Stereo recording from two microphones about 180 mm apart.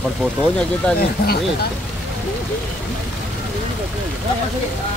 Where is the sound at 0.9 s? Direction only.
60° left (ahead or behind).